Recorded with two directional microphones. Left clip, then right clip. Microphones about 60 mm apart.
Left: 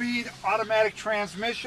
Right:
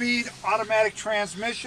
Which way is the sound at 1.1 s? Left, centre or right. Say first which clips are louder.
Right 1 dB; right.